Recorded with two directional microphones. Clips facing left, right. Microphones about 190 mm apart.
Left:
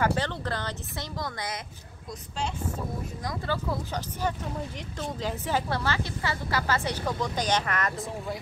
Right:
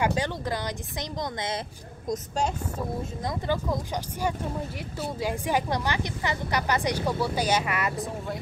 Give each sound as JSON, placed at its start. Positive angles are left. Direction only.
{"t": 0.0, "sound": "a woman's voice", "side_deg": -10}
{"t": 2.0, "sound": "speech", "side_deg": -45}
{"t": 3.0, "sound": "speech", "side_deg": -25}
{"t": 3.5, "sound": "a woman's voice", "side_deg": -15}